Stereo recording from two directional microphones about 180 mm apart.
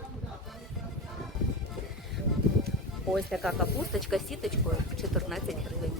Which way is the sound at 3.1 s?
Centre (ahead or behind).